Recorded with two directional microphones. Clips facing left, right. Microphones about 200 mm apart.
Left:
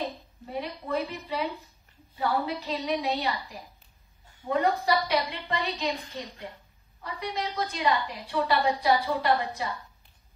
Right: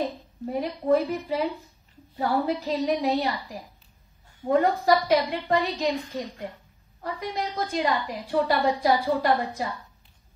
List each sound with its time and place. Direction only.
0.5 s a woman's voice: 45° right (ahead or behind)